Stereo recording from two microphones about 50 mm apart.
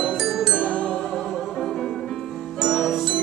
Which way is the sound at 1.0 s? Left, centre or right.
Centre.